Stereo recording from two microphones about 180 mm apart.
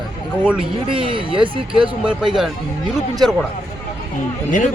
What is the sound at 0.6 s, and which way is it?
Speech, 30° right (ahead or behind).